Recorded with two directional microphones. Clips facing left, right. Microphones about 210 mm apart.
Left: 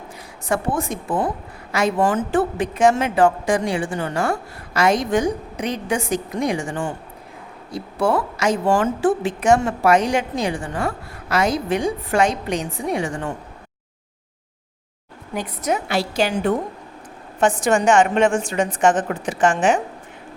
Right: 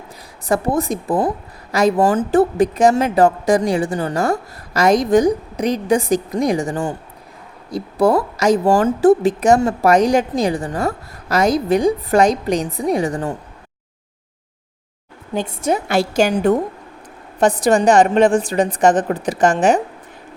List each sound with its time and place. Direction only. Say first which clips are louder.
0.4 s speech: right 4 dB; 35° right (ahead or behind)
15.4 s a woman's voice: right 4 dB; 30° right (ahead or behind)
15.9 s a woman's voice: right 5 dB; 45° right (ahead or behind)